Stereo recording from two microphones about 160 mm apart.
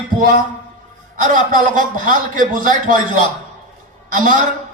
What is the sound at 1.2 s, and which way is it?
A man's voice, 55° right (ahead or behind).